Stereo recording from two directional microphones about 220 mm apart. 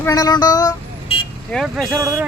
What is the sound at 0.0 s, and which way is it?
Speech, 15° left (ahead or behind).